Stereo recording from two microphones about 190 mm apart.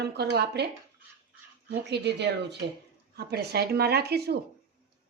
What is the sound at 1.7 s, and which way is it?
Speech, 60° right (ahead or behind).